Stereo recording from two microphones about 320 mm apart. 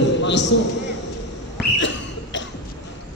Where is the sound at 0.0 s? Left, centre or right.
Left.